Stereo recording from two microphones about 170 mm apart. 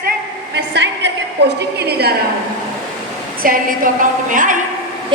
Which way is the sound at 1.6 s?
70° right (ahead or behind).